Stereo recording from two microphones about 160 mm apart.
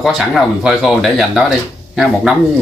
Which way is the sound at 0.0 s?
Centre (ahead or behind).